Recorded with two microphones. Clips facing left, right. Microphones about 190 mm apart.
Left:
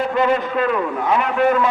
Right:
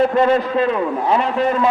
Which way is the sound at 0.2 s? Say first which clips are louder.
Right 3 dB; 30° right (ahead or behind).